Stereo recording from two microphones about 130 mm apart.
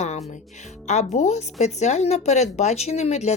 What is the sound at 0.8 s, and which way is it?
A woman's voice, 60° left (ahead or behind).